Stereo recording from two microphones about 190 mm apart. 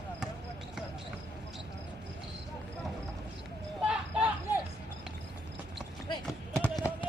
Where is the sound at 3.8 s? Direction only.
5° right (ahead or behind).